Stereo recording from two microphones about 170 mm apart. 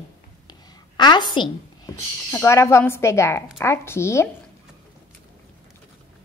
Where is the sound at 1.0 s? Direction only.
25° left (ahead or behind).